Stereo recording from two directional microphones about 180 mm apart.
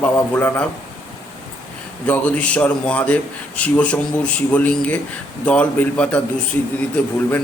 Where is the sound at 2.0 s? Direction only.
10° left (ahead or behind).